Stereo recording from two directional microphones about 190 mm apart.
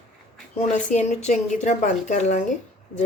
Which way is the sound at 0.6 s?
40° left (ahead or behind).